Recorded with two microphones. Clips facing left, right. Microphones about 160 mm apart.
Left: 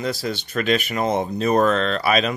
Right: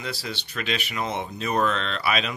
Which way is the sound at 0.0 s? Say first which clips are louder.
Left 8 dB; 45° left (ahead or behind).